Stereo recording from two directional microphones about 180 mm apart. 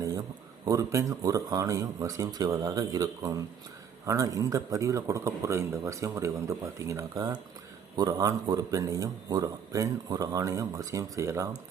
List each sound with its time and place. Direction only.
0.6 s a man's voice: 20° right (ahead or behind)